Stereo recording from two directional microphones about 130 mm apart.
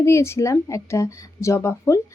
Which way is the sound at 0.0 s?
20° left (ahead or behind).